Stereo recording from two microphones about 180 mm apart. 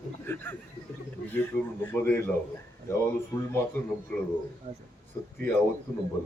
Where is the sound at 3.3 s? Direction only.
20° left (ahead or behind).